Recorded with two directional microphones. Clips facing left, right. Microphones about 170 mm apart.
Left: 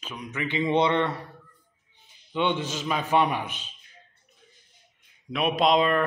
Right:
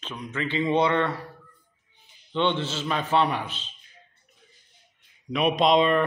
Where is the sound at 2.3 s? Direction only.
10° left (ahead or behind).